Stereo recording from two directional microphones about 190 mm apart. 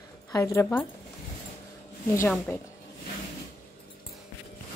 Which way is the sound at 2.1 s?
15° left (ahead or behind).